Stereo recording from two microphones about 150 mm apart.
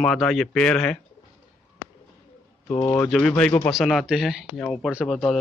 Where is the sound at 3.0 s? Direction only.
5° left (ahead or behind).